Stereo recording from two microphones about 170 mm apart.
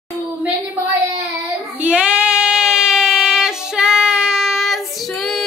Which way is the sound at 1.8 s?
5° right (ahead or behind).